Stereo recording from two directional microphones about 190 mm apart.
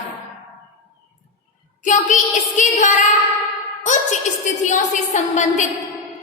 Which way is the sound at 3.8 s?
40° left (ahead or behind).